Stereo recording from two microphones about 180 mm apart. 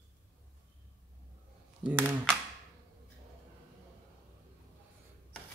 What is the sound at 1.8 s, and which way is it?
Speech, 10° right (ahead or behind).